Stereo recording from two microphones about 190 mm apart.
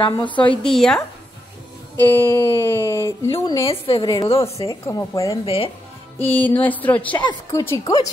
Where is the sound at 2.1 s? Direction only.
15° left (ahead or behind).